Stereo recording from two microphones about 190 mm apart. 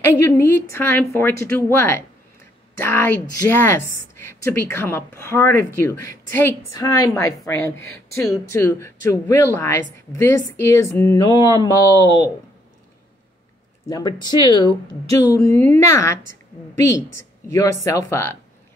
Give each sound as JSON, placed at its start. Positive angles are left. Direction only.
{"t": 0.4, "sound": "a woman's voice", "side_deg": 15}
{"t": 13.8, "sound": "a woman's voice", "side_deg": 20}